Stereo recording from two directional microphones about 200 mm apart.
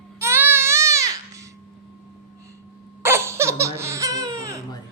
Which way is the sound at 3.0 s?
10° right (ahead or behind).